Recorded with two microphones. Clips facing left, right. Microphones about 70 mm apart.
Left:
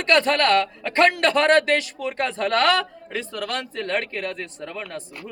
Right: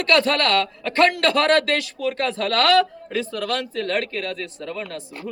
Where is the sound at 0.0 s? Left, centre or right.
Left.